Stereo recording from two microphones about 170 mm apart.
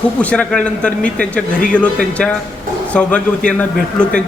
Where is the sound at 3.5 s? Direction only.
5° left (ahead or behind).